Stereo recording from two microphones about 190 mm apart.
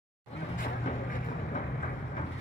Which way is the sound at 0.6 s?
45° left (ahead or behind).